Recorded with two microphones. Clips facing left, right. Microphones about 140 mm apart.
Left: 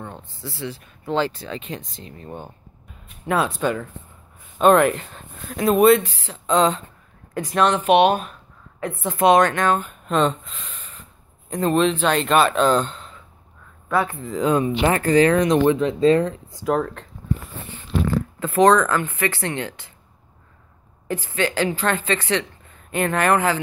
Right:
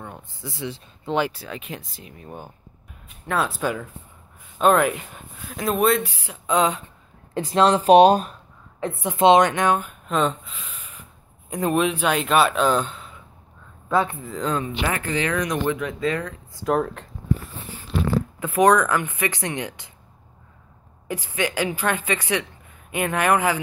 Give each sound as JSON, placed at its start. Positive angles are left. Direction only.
{"t": 0.0, "sound": "speech", "side_deg": -10}
{"t": 6.0, "sound": "speech", "side_deg": -10}
{"t": 7.3, "sound": "speech", "side_deg": -30}
{"t": 9.0, "sound": "speech", "side_deg": -20}
{"t": 10.0, "sound": "speech", "side_deg": 0}
{"t": 13.8, "sound": "speech", "side_deg": -20}
{"t": 14.2, "sound": "speech", "side_deg": 0}
{"t": 14.8, "sound": "speech", "side_deg": 35}
{"t": 16.6, "sound": "speech", "side_deg": -5}
{"t": 18.4, "sound": "speech", "side_deg": -10}
{"t": 21.1, "sound": "speech", "side_deg": -15}